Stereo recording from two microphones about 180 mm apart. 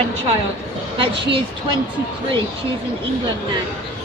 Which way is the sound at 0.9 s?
30° right (ahead or behind).